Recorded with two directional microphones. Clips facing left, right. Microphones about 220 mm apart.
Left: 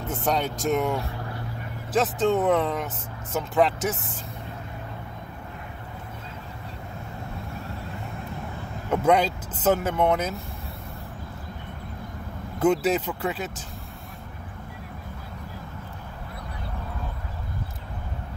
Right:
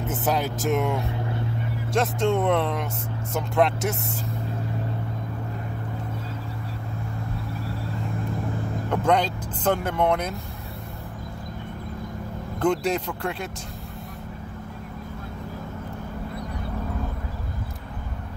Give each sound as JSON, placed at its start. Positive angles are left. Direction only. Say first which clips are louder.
{"t": 0.0, "sound": "speech", "louder": "right 1 dB", "side_deg": -5}
{"t": 1.0, "sound": "vehicle", "louder": "right 5 dB", "side_deg": -20}
{"t": 1.9, "sound": "speech", "louder": "left 1 dB", "side_deg": 0}
{"t": 8.9, "sound": "speech", "louder": "left 2 dB", "side_deg": 5}
{"t": 12.5, "sound": "speech", "louder": "left 2 dB", "side_deg": 5}